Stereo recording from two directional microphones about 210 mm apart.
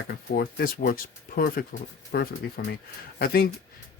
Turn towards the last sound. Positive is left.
turn(degrees=45)  # may be behind; listen again after turning